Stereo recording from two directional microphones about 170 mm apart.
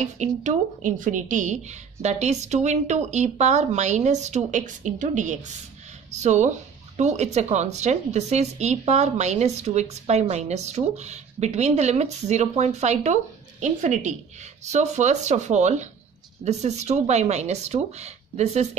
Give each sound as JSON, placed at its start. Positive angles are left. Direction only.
{"t": 0.2, "sound": "a woman's voice", "side_deg": -45}